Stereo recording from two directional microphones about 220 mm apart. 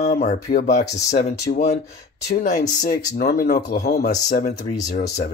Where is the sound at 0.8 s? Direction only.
15° left (ahead or behind).